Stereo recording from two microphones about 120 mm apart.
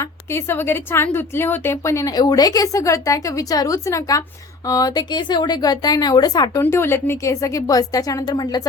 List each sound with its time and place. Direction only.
0.0 s a woman's voice: 20° left (ahead or behind)
6.6 s a woman's voice: 20° left (ahead or behind)